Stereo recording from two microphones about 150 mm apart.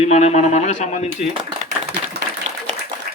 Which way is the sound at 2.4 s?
45° right (ahead or behind).